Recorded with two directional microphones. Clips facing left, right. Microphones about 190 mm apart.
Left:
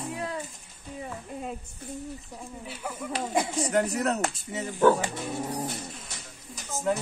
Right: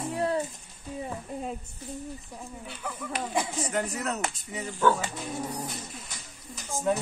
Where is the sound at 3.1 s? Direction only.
30° left (ahead or behind).